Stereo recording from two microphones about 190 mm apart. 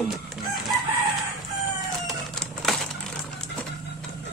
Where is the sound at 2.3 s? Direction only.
Centre (ahead or behind).